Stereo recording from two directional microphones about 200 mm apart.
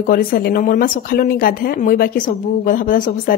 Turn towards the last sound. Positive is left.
turn(degrees=45)  # may be behind; listen again after turning